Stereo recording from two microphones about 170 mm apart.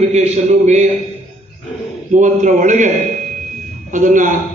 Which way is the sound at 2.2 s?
45° right (ahead or behind).